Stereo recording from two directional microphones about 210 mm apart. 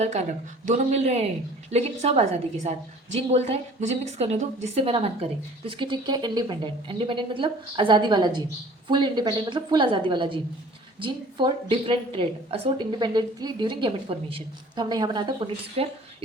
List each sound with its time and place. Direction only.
0.0 s a woman's voice: 35° right (ahead or behind)